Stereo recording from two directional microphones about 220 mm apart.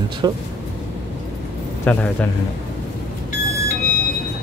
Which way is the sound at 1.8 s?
5° left (ahead or behind).